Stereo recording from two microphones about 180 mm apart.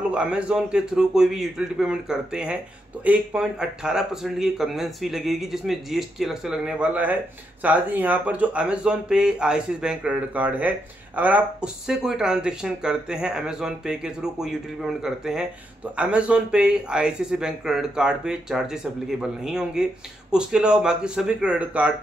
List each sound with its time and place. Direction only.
0.1 s speech: 5° right (ahead or behind)